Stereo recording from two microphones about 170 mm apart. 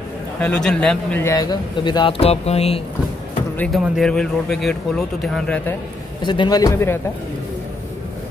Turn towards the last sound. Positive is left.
turn(degrees=15)  # may be behind; listen again after turning